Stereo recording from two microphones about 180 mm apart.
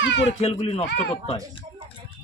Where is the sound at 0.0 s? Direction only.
90° left.